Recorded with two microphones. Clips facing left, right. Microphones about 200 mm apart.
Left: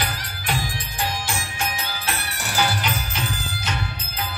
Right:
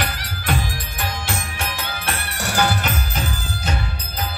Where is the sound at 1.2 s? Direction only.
60° right (ahead or behind).